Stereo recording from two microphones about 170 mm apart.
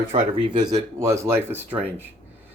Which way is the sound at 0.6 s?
20° right (ahead or behind).